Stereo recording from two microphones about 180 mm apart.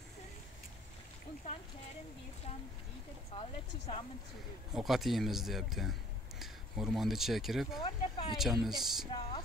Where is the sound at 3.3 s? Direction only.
30° left (ahead or behind).